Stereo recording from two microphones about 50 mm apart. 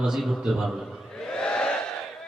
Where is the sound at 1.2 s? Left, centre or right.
Centre.